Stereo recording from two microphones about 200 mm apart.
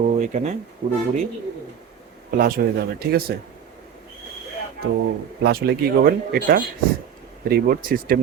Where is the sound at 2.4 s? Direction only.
45° right (ahead or behind).